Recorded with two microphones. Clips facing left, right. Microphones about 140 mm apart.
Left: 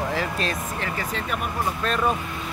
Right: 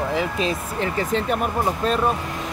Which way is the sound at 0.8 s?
30° right (ahead or behind).